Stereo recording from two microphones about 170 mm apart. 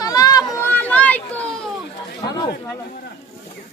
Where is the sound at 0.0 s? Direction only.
20° left (ahead or behind).